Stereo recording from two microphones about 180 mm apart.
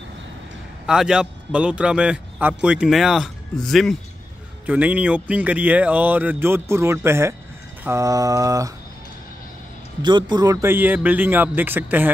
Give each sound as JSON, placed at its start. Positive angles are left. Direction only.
{"t": 0.8, "sound": "a man's voice", "side_deg": -5}
{"t": 7.8, "sound": "mantra", "side_deg": -15}
{"t": 10.0, "sound": "speech", "side_deg": -25}